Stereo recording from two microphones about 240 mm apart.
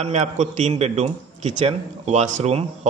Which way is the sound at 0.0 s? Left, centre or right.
Right.